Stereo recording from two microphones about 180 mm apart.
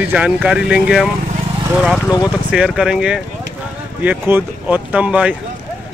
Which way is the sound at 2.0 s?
20° left (ahead or behind).